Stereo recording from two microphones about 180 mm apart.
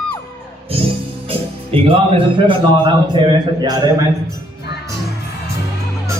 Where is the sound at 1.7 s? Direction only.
30° right (ahead or behind).